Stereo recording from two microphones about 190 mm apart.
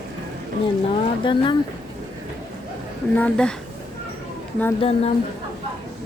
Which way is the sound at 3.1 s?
5° left (ahead or behind).